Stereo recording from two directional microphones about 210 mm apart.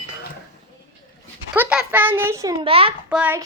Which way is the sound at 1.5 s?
5° right (ahead or behind).